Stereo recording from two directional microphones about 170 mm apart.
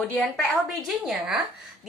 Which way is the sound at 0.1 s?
5° left (ahead or behind).